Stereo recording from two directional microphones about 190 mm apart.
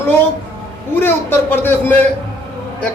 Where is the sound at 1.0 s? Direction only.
10° left (ahead or behind).